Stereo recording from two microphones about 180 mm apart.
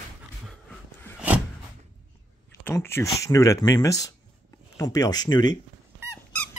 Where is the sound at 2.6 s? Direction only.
15° left (ahead or behind).